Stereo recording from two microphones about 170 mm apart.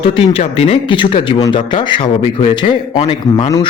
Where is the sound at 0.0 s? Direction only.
35° left (ahead or behind).